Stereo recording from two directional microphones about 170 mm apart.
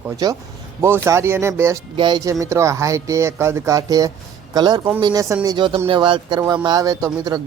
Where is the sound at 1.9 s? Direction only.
25° right (ahead or behind).